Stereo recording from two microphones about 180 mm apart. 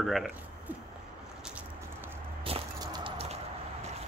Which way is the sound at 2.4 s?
25° right (ahead or behind).